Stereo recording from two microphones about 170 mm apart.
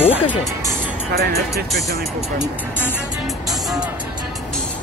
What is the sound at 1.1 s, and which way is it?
Speech, 65° right (ahead or behind).